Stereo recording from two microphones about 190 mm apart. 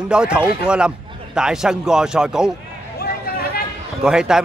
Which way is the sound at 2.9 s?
55° left (ahead or behind).